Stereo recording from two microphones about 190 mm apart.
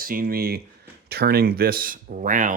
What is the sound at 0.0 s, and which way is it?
Speech, 50° right (ahead or behind).